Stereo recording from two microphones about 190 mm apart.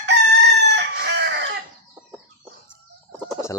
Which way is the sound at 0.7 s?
60° right (ahead or behind).